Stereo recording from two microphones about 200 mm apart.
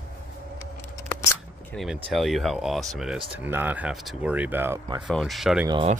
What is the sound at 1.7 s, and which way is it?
Speech, centre (ahead or behind).